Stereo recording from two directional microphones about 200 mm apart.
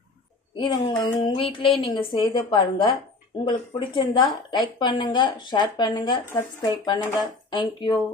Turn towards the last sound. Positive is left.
turn(degrees=25)  # may be behind; listen again after turning